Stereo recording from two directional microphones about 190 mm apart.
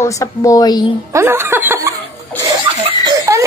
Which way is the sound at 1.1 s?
15° right (ahead or behind).